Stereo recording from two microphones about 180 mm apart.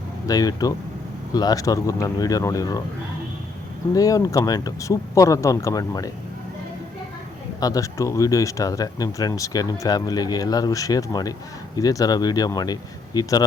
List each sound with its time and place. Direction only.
0.3 s speech: 20° left (ahead or behind)
3.9 s speech: 20° left (ahead or behind)
7.6 s speech: 20° left (ahead or behind)